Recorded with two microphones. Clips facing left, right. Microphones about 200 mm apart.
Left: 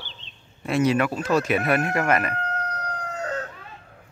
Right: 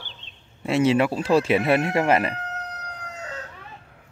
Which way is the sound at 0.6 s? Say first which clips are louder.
Right 2 dB; 25° right (ahead or behind).